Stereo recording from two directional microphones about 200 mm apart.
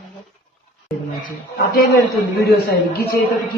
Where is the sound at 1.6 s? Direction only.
50° left (ahead or behind).